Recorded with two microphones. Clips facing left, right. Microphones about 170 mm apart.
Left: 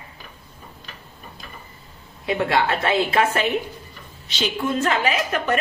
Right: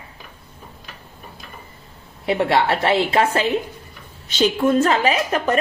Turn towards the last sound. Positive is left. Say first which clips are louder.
# right 3 dB
turn(degrees=-35)  # may be behind; listen again after turning